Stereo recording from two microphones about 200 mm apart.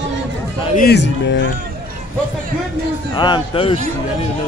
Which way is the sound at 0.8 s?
55° left (ahead or behind).